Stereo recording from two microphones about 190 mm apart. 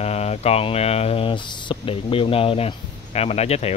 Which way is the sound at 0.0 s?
35° left (ahead or behind).